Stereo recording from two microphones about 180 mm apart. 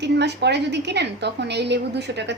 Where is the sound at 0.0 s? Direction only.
70° right (ahead or behind).